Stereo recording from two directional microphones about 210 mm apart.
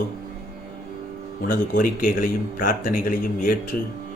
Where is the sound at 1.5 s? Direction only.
40° left (ahead or behind).